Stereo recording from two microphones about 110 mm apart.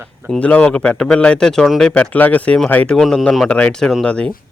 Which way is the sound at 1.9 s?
15° left (ahead or behind).